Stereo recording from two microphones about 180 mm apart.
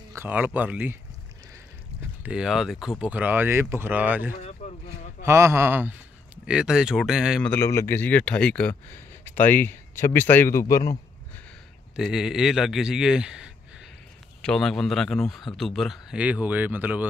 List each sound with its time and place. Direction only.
0.1 s speech: 10° right (ahead or behind)
2.2 s speech: 5° right (ahead or behind)
4.4 s a sound: 40° left (ahead or behind)
5.2 s a man's voice: 15° right (ahead or behind)
7.5 s speech: 15° left (ahead or behind)
11.9 s speech: 5° right (ahead or behind)